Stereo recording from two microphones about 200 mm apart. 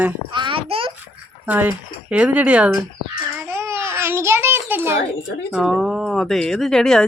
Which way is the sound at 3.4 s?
15° right (ahead or behind).